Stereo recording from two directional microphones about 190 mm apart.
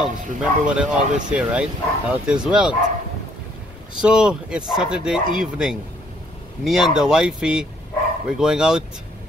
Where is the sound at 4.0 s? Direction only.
5° right (ahead or behind).